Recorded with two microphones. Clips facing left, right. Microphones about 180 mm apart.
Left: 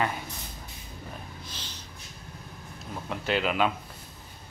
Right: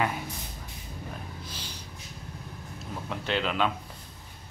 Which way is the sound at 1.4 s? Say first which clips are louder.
Right 2 dB; 10° right (ahead or behind).